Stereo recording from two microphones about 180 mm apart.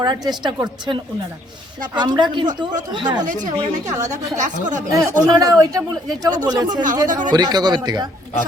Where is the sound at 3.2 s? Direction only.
45° right (ahead or behind).